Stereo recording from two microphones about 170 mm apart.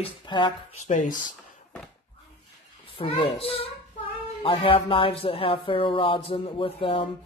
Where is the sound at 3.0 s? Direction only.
35° left (ahead or behind).